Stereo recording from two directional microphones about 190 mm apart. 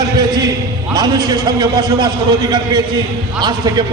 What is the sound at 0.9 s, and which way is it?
A man's voice, 20° right (ahead or behind).